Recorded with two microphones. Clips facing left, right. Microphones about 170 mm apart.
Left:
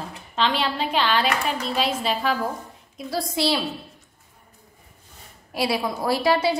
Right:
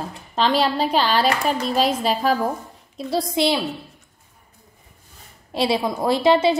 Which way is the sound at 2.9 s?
20° right (ahead or behind).